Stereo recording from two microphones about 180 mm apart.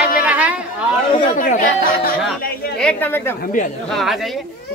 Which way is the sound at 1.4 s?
50° left (ahead or behind).